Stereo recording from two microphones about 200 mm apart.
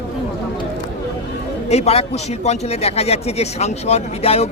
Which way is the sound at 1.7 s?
30° left (ahead or behind).